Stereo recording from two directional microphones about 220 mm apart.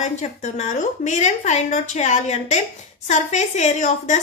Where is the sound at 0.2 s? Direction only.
35° left (ahead or behind).